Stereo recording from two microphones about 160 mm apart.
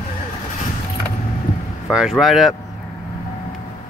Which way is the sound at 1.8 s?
Centre (ahead or behind).